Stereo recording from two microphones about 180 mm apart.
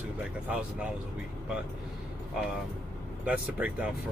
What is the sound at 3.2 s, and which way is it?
Speech, 5° right (ahead or behind).